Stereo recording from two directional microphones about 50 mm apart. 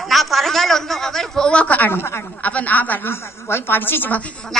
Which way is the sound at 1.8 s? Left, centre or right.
Left.